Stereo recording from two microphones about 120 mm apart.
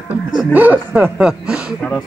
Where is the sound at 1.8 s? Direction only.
5° left (ahead or behind).